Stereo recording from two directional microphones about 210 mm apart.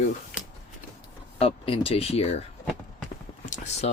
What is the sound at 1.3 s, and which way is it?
Speech, 25° left (ahead or behind).